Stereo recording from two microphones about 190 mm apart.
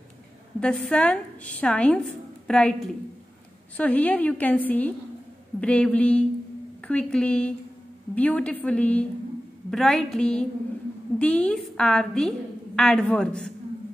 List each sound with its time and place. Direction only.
0.6 s a woman's voice: 5° left (ahead or behind)